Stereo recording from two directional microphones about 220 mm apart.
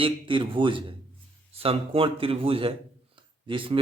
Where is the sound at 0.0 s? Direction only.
25° right (ahead or behind).